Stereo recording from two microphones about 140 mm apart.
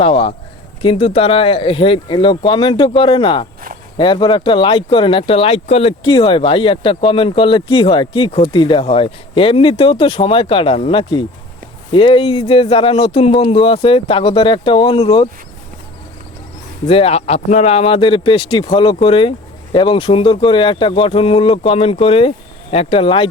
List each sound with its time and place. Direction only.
0.0 s speech: 45° left (ahead or behind)
16.8 s speech: 45° left (ahead or behind)